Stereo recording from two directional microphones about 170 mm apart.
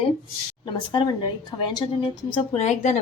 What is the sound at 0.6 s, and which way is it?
A woman's voice, 30° left (ahead or behind).